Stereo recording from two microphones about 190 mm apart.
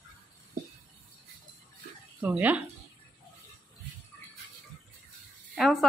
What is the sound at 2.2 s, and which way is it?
Speech, 10° right (ahead or behind).